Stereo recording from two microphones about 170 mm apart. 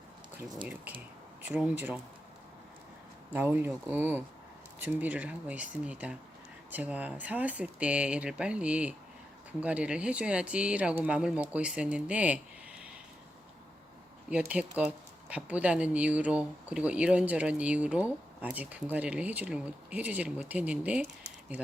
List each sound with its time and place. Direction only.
0.6 s speech: 10° right (ahead or behind)
3.3 s speech: 10° right (ahead or behind)
14.3 s speech: 5° right (ahead or behind)